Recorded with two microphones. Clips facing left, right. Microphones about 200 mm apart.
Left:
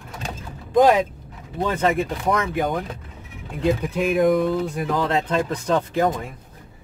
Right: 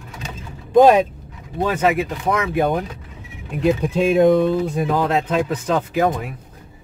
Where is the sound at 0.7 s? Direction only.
25° right (ahead or behind).